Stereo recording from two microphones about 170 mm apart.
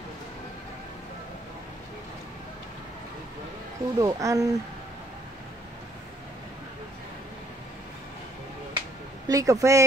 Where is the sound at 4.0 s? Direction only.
20° right (ahead or behind).